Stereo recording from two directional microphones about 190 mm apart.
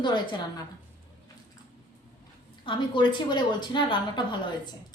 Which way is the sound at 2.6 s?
25° left (ahead or behind).